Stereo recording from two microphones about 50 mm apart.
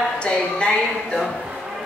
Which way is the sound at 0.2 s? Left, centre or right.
Centre.